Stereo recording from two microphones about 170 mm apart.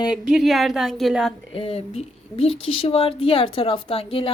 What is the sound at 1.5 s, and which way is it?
Speech, 35° left (ahead or behind).